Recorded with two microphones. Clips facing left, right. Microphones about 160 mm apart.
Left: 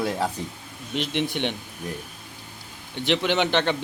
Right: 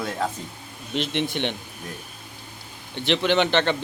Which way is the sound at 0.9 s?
10° left (ahead or behind).